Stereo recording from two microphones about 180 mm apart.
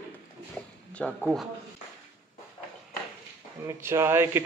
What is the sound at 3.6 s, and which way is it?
Speech, 15° right (ahead or behind).